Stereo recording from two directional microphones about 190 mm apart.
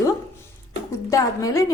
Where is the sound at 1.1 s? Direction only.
15° left (ahead or behind).